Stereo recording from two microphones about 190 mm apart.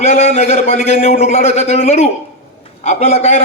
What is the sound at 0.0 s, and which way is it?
A man's voice, 35° left (ahead or behind).